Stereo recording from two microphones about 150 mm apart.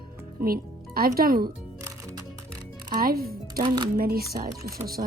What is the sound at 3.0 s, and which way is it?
Speech, 90° right.